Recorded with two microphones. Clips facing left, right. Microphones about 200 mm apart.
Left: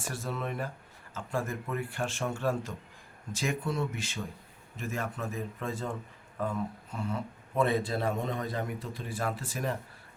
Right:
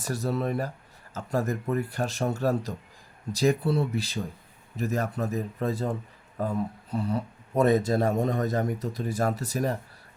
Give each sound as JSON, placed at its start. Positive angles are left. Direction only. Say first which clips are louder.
{"t": 0.0, "sound": "speech", "louder": "right 7 dB", "side_deg": -40}